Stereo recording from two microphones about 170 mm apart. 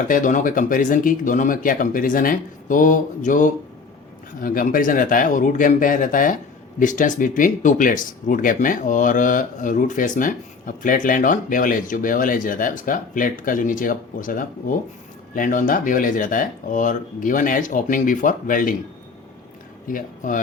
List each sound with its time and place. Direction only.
0.1 s speech: 50° left (ahead or behind)
19.9 s speech: 50° left (ahead or behind)